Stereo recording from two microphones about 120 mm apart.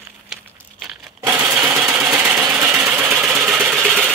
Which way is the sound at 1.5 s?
20° right (ahead or behind).